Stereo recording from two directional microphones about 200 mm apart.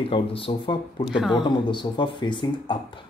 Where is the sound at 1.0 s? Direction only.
Centre (ahead or behind).